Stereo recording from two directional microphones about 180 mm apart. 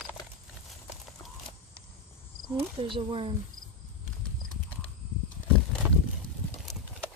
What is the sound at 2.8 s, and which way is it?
Speech, 30° right (ahead or behind).